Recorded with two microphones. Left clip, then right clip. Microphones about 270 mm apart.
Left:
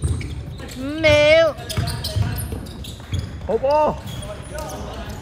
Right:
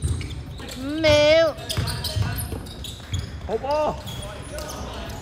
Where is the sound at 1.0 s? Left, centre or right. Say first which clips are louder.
Left 3 dB; left.